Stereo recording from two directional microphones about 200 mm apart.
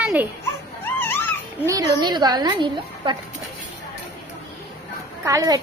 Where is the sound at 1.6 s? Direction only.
15° right (ahead or behind).